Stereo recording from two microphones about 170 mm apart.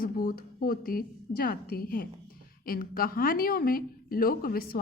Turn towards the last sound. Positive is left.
turn(degrees=60)  # may be behind; listen again after turning